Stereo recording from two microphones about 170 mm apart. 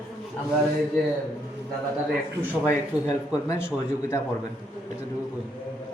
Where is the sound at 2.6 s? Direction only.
20° left (ahead or behind).